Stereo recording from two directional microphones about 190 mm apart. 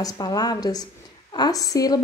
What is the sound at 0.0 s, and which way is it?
A woman's voice, 20° left (ahead or behind).